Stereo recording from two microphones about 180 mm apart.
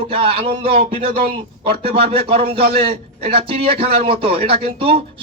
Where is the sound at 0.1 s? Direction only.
30° right (ahead or behind).